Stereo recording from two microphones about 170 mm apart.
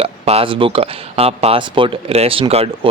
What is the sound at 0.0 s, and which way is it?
Speech, 35° right (ahead or behind).